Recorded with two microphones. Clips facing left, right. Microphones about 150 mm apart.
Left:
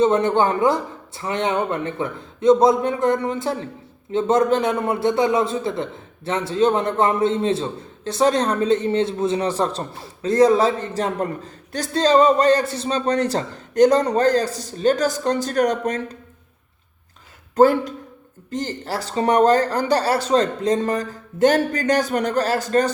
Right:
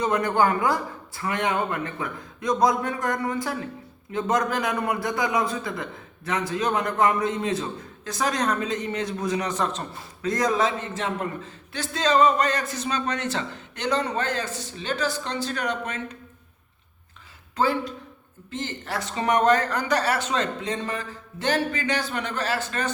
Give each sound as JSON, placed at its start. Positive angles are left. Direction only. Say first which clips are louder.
{"t": 0.0, "sound": "a man's voice", "louder": "left 5 dB", "side_deg": 25}
{"t": 17.5, "sound": "a man's voice", "louder": "left 9 dB", "side_deg": 45}